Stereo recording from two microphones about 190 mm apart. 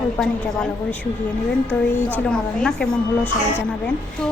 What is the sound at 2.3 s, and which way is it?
Speech, 5° left (ahead or behind).